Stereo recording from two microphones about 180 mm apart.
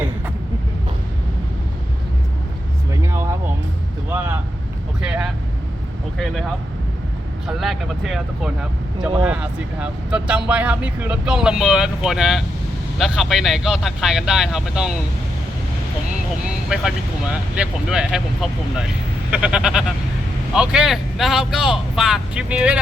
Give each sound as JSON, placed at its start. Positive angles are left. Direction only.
{"t": 2.9, "sound": "a sound", "side_deg": -15}
{"t": 4.1, "sound": "vehicle", "side_deg": -10}
{"t": 7.4, "sound": "speech", "side_deg": 0}
{"t": 16.6, "sound": "speech", "side_deg": -5}
{"t": 19.3, "sound": "speech", "side_deg": -5}